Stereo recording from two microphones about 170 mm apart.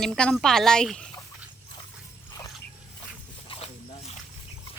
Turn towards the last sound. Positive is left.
turn(degrees=35)  # may be behind; listen again after turning